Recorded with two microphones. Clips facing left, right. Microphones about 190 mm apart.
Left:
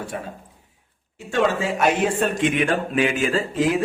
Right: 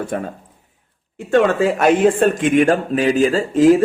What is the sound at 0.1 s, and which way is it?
A man's voice, 55° right (ahead or behind).